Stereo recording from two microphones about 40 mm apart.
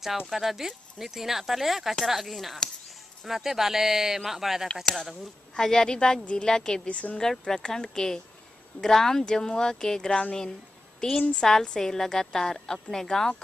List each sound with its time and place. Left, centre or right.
0.3 s speech: centre
4.9 s a woman's voice: centre
6.9 s a woman's voice: left
7.2 s a woman's voice: centre